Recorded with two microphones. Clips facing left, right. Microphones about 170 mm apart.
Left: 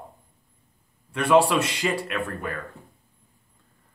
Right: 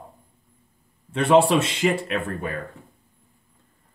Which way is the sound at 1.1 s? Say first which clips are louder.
Right 2 dB; 20° right (ahead or behind).